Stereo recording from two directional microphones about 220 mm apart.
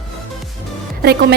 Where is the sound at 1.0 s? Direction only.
45° right (ahead or behind).